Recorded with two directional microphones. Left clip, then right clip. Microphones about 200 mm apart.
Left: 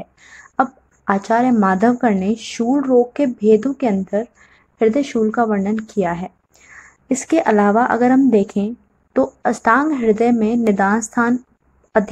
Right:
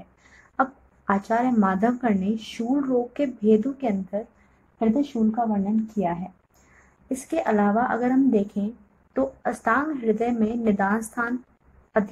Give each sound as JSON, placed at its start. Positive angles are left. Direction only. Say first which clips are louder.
{"t": 0.6, "sound": "a woman's voice", "louder": "left 6 dB", "side_deg": 30}